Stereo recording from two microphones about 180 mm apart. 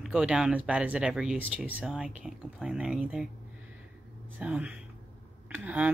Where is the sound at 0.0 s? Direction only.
5° right (ahead or behind).